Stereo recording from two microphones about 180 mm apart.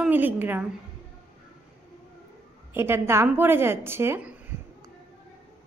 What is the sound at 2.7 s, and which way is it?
Speech, 15° right (ahead or behind).